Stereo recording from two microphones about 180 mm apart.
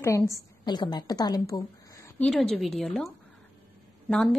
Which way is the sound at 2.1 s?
5° left (ahead or behind).